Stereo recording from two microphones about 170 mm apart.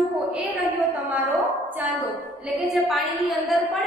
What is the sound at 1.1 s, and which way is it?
Speech, centre (ahead or behind).